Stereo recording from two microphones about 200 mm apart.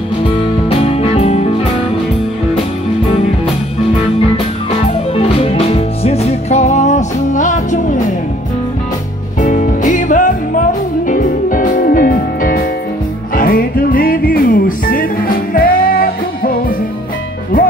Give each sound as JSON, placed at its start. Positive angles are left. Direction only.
{"t": 0.7, "sound": "music", "side_deg": 30}
{"t": 5.1, "sound": "music", "side_deg": 30}
{"t": 9.4, "sound": "music", "side_deg": 40}